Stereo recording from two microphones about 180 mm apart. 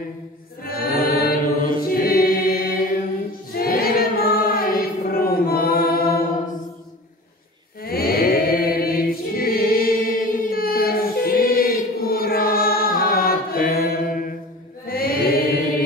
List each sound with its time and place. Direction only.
0.7 s choir: 55° left (ahead or behind)
3.5 s child singing: 55° left (ahead or behind)
7.8 s choir: 55° left (ahead or behind)
14.9 s chant: 55° left (ahead or behind)